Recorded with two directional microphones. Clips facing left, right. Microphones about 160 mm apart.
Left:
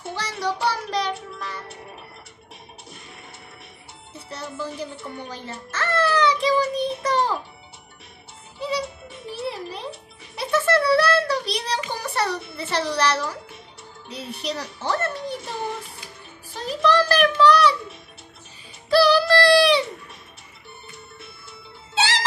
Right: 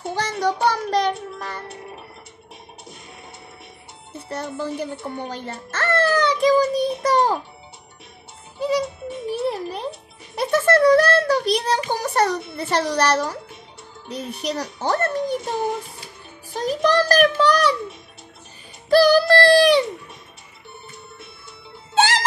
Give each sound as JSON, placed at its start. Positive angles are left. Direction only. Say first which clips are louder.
{"t": 0.1, "sound": "child singing", "louder": "right 4 dB", "side_deg": -45}
{"t": 4.3, "sound": "speech", "louder": "right 5 dB", "side_deg": -55}
{"t": 5.3, "sound": "child singing", "louder": "right 3 dB", "side_deg": -50}
{"t": 8.5, "sound": "music", "louder": "right 5 dB", "side_deg": -45}
{"t": 10.3, "sound": "a sound", "louder": "right 3 dB", "side_deg": -45}
{"t": 14.0, "sound": "speech", "louder": "right 3 dB", "side_deg": -45}
{"t": 16.5, "sound": "a child's voice", "louder": "right 1 dB", "side_deg": -45}
{"t": 18.9, "sound": "a sound", "louder": "right 3 dB", "side_deg": -45}
{"t": 21.9, "sound": "music", "louder": "right 5 dB", "side_deg": -50}